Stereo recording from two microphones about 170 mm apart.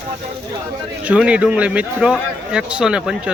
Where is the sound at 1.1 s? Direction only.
5° right (ahead or behind).